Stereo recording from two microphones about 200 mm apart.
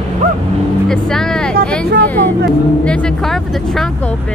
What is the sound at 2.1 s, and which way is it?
Vehicle, 10° left (ahead or behind).